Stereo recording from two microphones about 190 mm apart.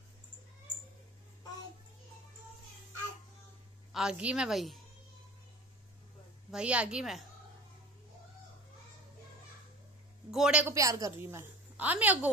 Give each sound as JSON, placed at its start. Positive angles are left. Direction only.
{"t": 3.9, "sound": "a woman's voice", "side_deg": -5}
{"t": 6.5, "sound": "a woman's voice", "side_deg": -5}
{"t": 10.3, "sound": "a woman's voice", "side_deg": -5}
{"t": 10.7, "sound": "a woman's voice", "side_deg": -15}